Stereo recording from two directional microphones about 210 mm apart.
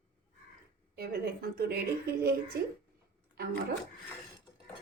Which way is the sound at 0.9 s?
50° right (ahead or behind).